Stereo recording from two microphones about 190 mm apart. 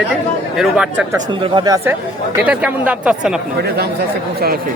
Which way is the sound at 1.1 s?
25° right (ahead or behind).